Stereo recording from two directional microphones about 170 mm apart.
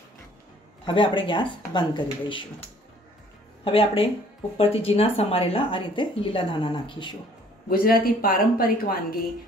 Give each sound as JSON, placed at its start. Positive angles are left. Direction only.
{"t": 0.8, "sound": "speech", "side_deg": 30}
{"t": 3.6, "sound": "speech", "side_deg": 35}
{"t": 7.7, "sound": "a woman's voice", "side_deg": 60}